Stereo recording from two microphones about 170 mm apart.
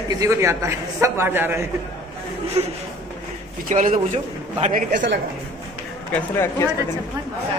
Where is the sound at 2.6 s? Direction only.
40° right (ahead or behind).